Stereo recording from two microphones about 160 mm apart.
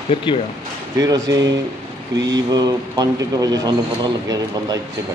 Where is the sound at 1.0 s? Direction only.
20° right (ahead or behind).